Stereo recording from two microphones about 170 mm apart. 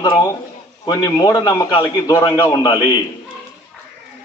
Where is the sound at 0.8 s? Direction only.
20° left (ahead or behind).